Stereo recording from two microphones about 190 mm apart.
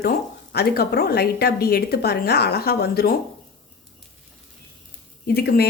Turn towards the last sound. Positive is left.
turn(degrees=55)  # may be behind; listen again after turning